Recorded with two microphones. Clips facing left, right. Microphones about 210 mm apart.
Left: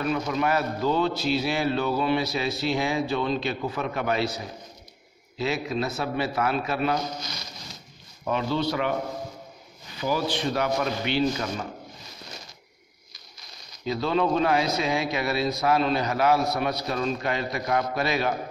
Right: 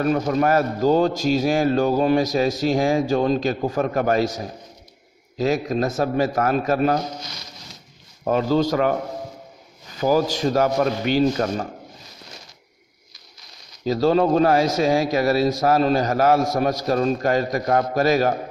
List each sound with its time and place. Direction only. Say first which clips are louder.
0.0 s a man's voice: right 6 dB; 45° right (ahead or behind)
8.3 s a man's voice: right 7 dB; 40° right (ahead or behind)
9.9 s a man's voice: right 7 dB; 45° right (ahead or behind)
13.8 s a man's voice: right 7 dB; 40° right (ahead or behind)